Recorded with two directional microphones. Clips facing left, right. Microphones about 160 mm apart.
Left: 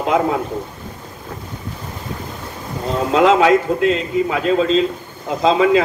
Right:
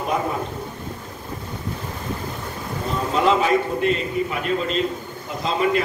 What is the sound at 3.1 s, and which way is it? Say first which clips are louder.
A man's voice: left 6 dB; 90° left.